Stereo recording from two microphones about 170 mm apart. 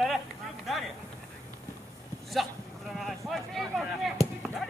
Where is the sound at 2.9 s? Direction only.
Centre (ahead or behind).